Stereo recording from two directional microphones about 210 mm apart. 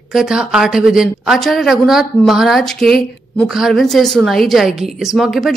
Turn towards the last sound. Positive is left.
turn(degrees=0)  # may be behind; listen again after turning